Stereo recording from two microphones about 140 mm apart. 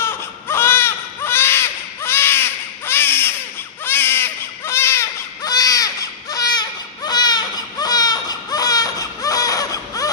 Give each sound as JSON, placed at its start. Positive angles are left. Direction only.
{"t": 0.0, "sound": "baby cry", "side_deg": 15}